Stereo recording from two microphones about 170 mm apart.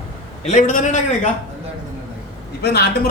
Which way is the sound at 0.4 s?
45° left (ahead or behind).